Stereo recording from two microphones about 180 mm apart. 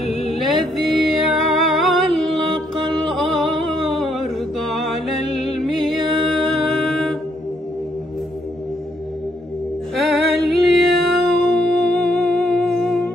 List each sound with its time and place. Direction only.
0.3 s music: centre (ahead or behind)
3.8 s a sound: centre (ahead or behind)
5.6 s music: centre (ahead or behind)
10.1 s music: centre (ahead or behind)